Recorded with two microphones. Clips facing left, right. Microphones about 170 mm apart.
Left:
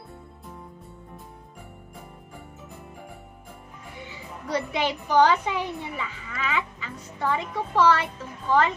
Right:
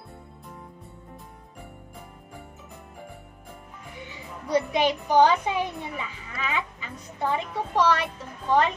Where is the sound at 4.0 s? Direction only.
15° right (ahead or behind).